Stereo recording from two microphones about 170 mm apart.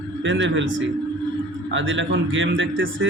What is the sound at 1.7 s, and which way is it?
Speech, 90° right.